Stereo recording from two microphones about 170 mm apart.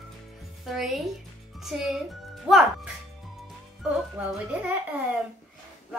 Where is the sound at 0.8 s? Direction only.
Centre (ahead or behind).